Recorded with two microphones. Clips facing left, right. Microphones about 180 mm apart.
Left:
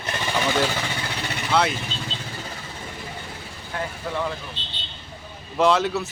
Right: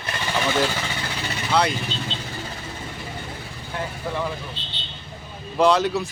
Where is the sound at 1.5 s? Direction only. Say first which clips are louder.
Even; centre (ahead or behind).